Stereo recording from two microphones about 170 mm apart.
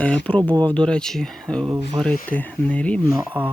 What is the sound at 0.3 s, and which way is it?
Speech, 10° left (ahead or behind).